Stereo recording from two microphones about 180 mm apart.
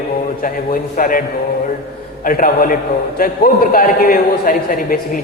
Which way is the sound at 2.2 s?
50° left (ahead or behind).